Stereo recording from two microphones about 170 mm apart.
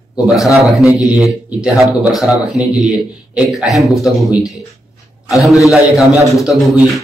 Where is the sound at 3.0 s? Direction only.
Centre (ahead or behind).